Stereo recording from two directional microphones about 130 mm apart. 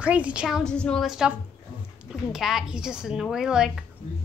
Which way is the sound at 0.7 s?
5° left (ahead or behind).